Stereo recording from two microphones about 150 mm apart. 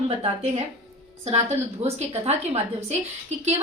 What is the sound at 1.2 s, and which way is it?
A woman's voice, 45° right (ahead or behind).